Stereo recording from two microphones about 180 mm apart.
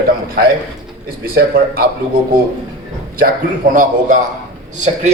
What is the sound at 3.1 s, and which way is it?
A man's voice, 50° right (ahead or behind).